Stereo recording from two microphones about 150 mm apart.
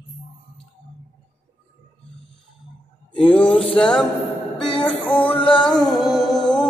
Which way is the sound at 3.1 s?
10° left (ahead or behind).